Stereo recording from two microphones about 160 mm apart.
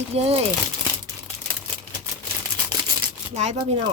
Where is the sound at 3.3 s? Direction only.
45° right (ahead or behind).